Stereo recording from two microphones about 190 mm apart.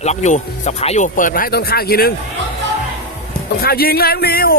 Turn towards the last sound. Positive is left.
turn(degrees=55)  # may be behind; listen again after turning